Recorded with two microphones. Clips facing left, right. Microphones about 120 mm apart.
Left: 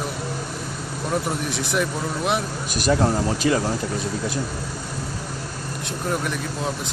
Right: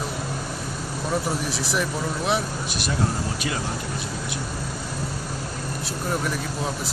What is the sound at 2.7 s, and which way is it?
Speech, 40° left (ahead or behind).